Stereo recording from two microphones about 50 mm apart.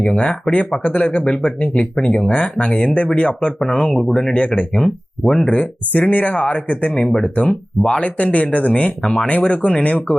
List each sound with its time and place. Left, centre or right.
0.0 s speech: centre
0.5 s speech: left
4.7 s speech: centre
5.5 s speech: left